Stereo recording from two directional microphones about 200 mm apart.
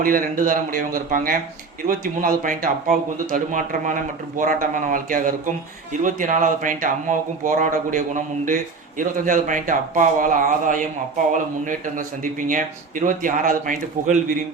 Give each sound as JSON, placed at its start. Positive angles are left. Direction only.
{"t": 0.0, "sound": "a man's voice", "side_deg": -45}